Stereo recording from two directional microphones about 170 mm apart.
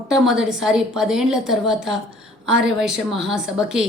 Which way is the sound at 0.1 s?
Centre (ahead or behind).